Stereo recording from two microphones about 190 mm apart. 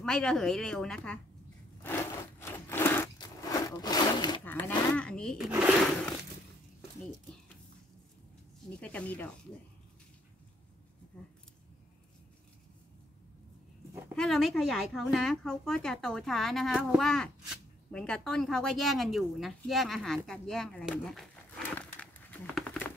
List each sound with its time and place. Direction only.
0.0 s a woman's voice: 5° left (ahead or behind)
1.8 s wood: 10° left (ahead or behind)
4.5 s a woman's voice: 10° left (ahead or behind)
8.8 s speech: 5° left (ahead or behind)
14.1 s a woman's voice: centre (ahead or behind)